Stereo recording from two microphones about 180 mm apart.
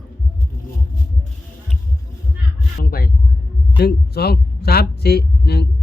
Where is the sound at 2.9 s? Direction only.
55° left (ahead or behind).